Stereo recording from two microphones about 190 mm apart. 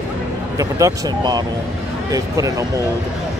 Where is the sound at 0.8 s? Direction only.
20° right (ahead or behind).